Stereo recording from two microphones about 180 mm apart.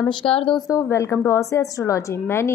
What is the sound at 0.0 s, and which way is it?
Speech, 25° left (ahead or behind).